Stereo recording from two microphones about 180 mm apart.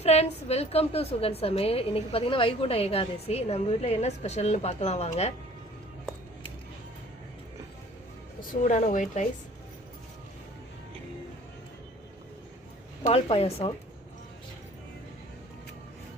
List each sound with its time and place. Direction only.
0.0 s a woman's voice: 35° left (ahead or behind)
8.4 s speech: 45° left (ahead or behind)
13.0 s a woman's voice: 35° left (ahead or behind)